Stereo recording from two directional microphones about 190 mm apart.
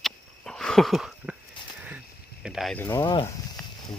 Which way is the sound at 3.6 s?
5° left (ahead or behind).